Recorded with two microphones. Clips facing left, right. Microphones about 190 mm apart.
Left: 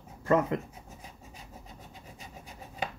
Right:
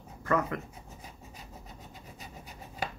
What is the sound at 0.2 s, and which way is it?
Speech, 25° left (ahead or behind).